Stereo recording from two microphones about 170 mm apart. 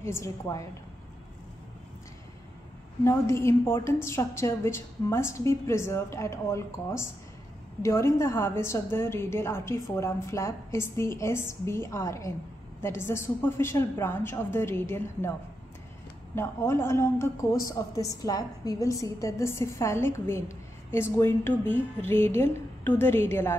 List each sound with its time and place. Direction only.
0.0 s a woman's voice: 15° left (ahead or behind)
3.0 s a woman's voice: 15° left (ahead or behind)
16.3 s a woman's voice: 15° left (ahead or behind)